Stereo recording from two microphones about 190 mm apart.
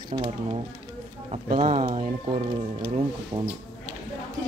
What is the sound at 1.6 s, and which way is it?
Speech, 30° right (ahead or behind).